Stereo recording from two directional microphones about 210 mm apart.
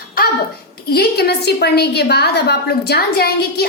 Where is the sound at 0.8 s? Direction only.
50° left (ahead or behind).